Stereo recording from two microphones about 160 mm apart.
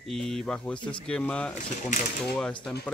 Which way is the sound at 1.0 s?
5° left (ahead or behind).